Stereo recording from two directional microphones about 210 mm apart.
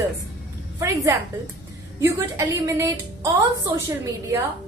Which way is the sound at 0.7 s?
15° right (ahead or behind).